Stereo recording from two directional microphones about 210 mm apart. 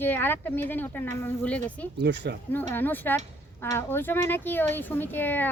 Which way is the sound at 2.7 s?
10° left (ahead or behind).